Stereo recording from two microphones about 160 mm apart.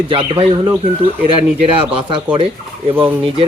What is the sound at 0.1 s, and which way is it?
Speech, 30° right (ahead or behind).